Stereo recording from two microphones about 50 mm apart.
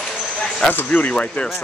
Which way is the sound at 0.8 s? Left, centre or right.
Left.